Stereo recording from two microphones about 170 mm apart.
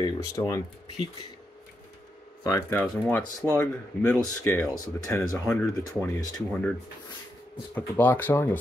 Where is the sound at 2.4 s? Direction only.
15° left (ahead or behind).